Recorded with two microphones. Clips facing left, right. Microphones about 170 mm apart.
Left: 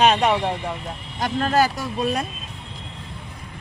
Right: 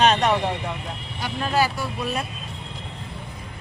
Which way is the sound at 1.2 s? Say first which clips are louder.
Left 3 dB; 45° left (ahead or behind).